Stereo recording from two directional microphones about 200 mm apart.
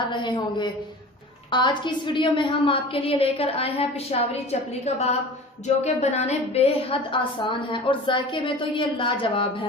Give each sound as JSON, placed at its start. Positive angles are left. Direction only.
{"t": 0.1, "sound": "a woman's voice", "side_deg": 20}
{"t": 5.6, "sound": "a woman's voice", "side_deg": 35}